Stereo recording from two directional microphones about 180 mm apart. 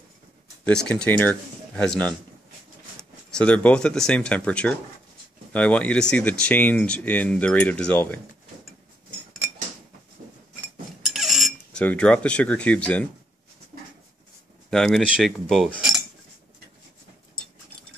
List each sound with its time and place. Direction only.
0.7 s speech: 5° left (ahead or behind)
1.8 s cutlery: 5° left (ahead or behind)
3.0 s speech: 5° left (ahead or behind)
11.0 s speech: centre (ahead or behind)
14.7 s cutlery: centre (ahead or behind)